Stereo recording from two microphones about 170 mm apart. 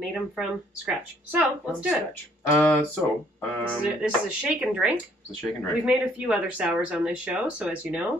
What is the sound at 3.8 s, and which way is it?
Speech, 5° right (ahead or behind).